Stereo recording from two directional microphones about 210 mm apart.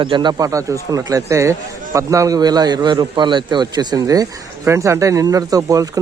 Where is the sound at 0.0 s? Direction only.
20° right (ahead or behind).